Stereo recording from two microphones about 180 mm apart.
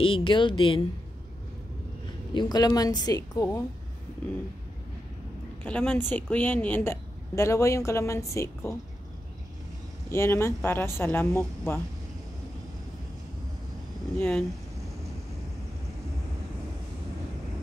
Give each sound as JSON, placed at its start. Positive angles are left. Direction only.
{"t": 0.0, "sound": "a woman's voice", "side_deg": 30}
{"t": 2.3, "sound": "a woman's voice", "side_deg": 20}
{"t": 5.6, "sound": "a woman's voice", "side_deg": 5}
{"t": 10.1, "sound": "a woman's voice", "side_deg": 15}
{"t": 14.1, "sound": "a woman's voice", "side_deg": 5}